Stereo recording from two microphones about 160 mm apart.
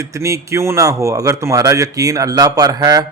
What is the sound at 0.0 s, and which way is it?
Speech, 20° right (ahead or behind).